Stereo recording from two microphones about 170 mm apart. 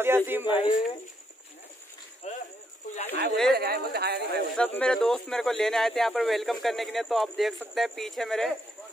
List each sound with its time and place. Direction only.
0.0 s speech: 15° right (ahead or behind)
2.2 s a sound: 45° left (ahead or behind)
2.9 s speech: 35° left (ahead or behind)
3.5 s speech: 65° right (ahead or behind)
4.6 s speech: 5° left (ahead or behind)